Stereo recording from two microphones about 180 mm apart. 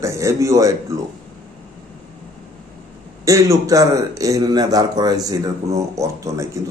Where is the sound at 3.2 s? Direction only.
15° right (ahead or behind).